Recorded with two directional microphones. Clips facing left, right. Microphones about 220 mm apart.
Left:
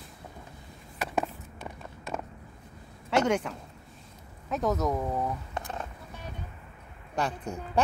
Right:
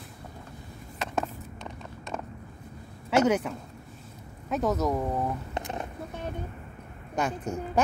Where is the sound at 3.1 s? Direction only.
5° right (ahead or behind).